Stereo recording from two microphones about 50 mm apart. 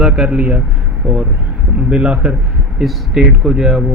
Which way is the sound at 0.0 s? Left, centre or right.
Centre.